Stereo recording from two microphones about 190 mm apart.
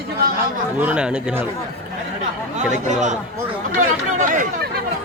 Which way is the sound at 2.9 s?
40° right (ahead or behind).